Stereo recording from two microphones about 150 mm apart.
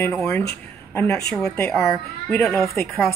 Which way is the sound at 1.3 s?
5° left (ahead or behind).